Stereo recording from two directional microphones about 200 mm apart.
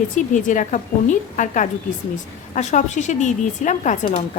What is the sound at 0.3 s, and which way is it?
A woman's voice, 40° left (ahead or behind).